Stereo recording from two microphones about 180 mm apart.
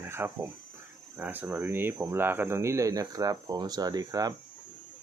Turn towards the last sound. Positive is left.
turn(degrees=-20)  # may be behind; listen again after turning